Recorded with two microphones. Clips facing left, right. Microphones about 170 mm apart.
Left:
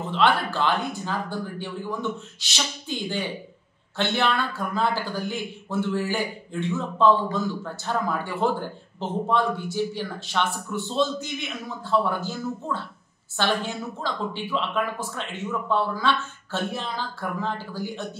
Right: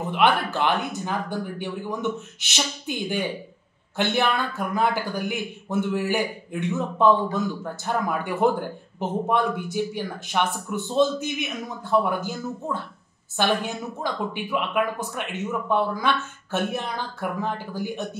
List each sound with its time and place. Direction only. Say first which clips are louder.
0.0 s speech: right 1 dB; 15° right (ahead or behind)